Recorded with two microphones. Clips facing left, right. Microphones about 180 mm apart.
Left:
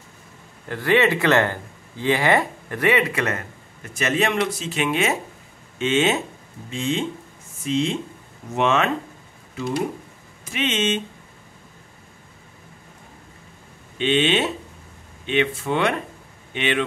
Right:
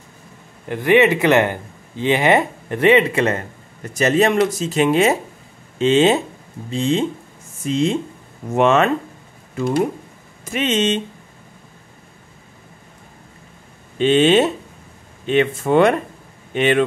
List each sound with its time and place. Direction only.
0.7 s speech: 20° right (ahead or behind); by 11.0 s 40° right (ahead or behind)
13.9 s speech: 40° right (ahead or behind)